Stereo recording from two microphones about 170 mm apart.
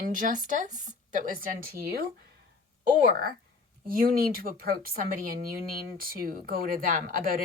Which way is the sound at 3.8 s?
60° right (ahead or behind).